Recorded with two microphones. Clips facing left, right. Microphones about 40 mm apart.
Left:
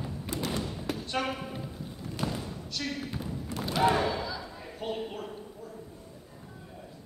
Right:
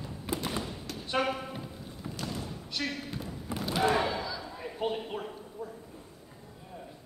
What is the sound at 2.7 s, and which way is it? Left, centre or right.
Basketball bounce, centre.